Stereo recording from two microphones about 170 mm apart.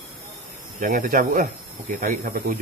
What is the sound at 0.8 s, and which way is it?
Speech, 55° right (ahead or behind).